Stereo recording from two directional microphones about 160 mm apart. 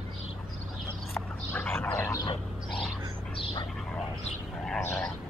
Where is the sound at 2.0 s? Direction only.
25° left (ahead or behind).